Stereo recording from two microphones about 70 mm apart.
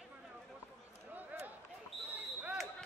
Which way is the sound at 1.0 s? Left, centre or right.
Right.